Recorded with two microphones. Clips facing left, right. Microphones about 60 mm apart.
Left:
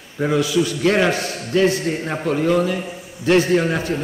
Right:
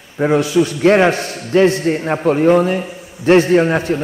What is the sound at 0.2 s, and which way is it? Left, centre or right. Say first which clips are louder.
A man's voice: right 4 dB; right.